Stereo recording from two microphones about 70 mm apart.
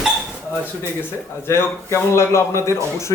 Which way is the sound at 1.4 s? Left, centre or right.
Left.